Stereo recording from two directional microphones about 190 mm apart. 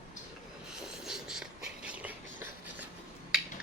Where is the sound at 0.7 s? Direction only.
5° right (ahead or behind).